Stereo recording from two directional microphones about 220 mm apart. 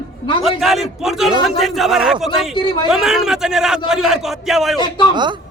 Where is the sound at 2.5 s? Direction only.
20° left (ahead or behind).